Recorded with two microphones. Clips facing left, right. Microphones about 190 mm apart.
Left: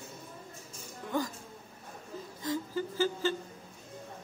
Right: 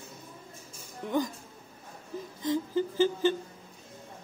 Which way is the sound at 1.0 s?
20° right (ahead or behind).